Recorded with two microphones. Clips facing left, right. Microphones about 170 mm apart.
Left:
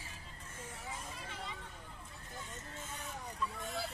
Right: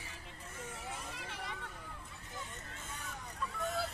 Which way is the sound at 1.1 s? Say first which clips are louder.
Right 1 dB; 70° right (ahead or behind).